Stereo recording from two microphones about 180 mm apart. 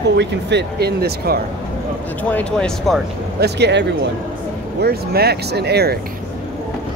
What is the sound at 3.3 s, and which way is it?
Speech, 65° right (ahead or behind).